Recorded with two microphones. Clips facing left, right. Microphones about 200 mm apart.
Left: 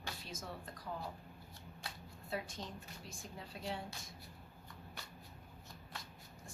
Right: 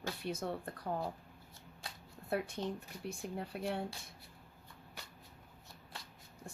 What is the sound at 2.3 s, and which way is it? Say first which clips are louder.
Speech: right 7 dB; 65° right (ahead or behind).